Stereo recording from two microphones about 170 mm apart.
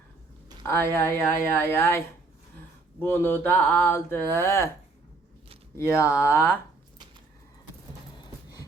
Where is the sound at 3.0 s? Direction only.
10° left (ahead or behind).